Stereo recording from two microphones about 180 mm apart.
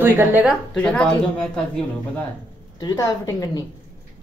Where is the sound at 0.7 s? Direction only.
5° left (ahead or behind).